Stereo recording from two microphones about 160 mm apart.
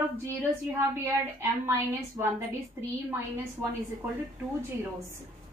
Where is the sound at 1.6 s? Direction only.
15° right (ahead or behind).